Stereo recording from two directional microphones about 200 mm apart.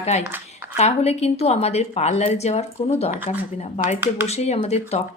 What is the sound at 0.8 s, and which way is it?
A woman's voice, 30° left (ahead or behind).